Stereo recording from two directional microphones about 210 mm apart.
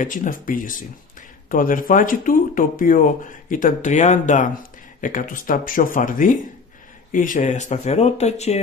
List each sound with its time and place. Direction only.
0.0 s speech: 40° left (ahead or behind)